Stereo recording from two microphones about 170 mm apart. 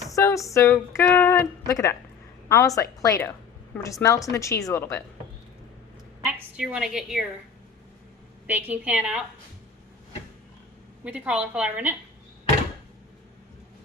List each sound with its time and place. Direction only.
0.1 s a sound: 20° left (ahead or behind)
0.5 s a woman's voice: 15° left (ahead or behind)
6.2 s a woman's voice: 5° right (ahead or behind)
8.4 s a woman's voice: 10° right (ahead or behind)
11.0 s a woman's voice: 10° right (ahead or behind)